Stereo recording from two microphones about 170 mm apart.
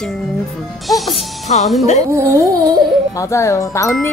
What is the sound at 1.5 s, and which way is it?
Speech, 40° left (ahead or behind).